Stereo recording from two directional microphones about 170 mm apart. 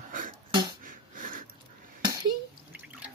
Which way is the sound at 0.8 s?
55° right (ahead or behind).